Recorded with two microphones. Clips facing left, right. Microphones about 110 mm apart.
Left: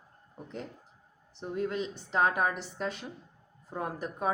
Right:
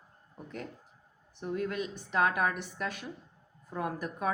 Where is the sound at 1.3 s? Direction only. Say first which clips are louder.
Left 1 dB; 30° left (ahead or behind).